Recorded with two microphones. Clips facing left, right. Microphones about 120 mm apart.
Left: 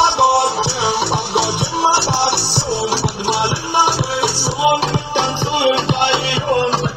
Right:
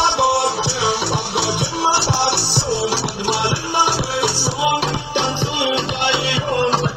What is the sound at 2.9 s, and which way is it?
Music, 30° left (ahead or behind).